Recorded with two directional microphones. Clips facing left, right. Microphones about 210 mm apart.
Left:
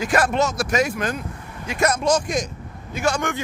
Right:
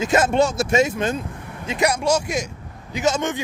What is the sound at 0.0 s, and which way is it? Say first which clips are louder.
Speech: right 2 dB; 25° right (ahead or behind).